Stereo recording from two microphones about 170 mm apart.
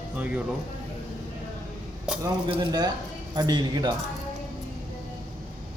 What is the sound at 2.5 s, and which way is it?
Speech, 25° right (ahead or behind).